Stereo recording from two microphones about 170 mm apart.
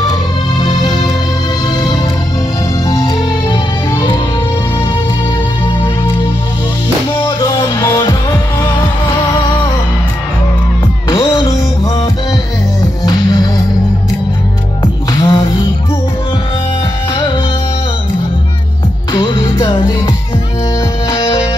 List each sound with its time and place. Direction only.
0.6 s music: 25° left (ahead or behind)
2.9 s music: 25° left (ahead or behind)
7.2 s music: 25° left (ahead or behind)
11.1 s music: 25° left (ahead or behind)
13.0 s music: 25° left (ahead or behind)
14.8 s music: 30° left (ahead or behind)
19.1 s music: 25° left (ahead or behind)
21.1 s music: 25° left (ahead or behind)